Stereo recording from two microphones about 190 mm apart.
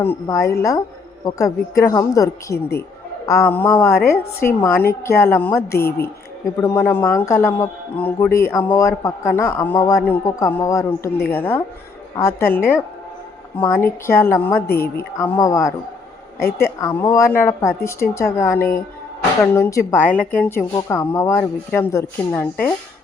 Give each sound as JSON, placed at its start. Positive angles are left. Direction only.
{"t": 0.0, "sound": "a woman's voice", "side_deg": 15}
{"t": 16.9, "sound": "speech", "side_deg": 25}
{"t": 17.2, "sound": "a woman's voice", "side_deg": 15}